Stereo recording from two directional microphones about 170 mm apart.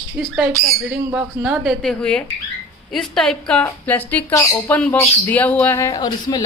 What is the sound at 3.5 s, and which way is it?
Speech, 10° left (ahead or behind).